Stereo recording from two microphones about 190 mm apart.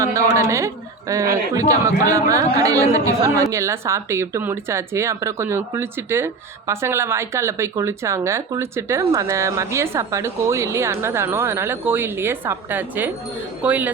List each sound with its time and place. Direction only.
0.0 s a woman's voice: 15° right (ahead or behind)